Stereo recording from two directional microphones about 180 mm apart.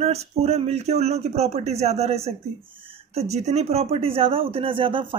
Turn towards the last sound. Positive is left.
turn(degrees=-30)  # may be behind; listen again after turning